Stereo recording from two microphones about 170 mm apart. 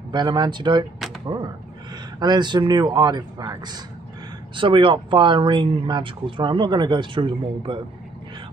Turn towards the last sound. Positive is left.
turn(degrees=-30)  # may be behind; listen again after turning